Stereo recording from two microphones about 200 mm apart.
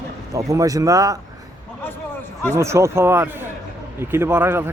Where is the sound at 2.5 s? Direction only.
15° right (ahead or behind).